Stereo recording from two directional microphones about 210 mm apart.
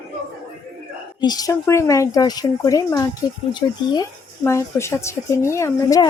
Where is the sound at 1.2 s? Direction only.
20° left (ahead or behind).